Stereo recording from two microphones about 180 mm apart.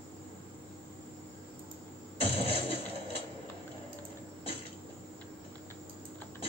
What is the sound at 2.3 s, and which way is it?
Music, 30° left (ahead or behind).